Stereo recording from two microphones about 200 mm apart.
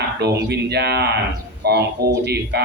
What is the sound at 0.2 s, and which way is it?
Speech, 55° right (ahead or behind).